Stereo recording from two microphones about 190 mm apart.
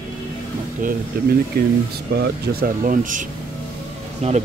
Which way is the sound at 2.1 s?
55° right (ahead or behind).